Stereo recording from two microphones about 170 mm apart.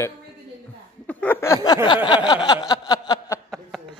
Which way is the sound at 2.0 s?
25° left (ahead or behind).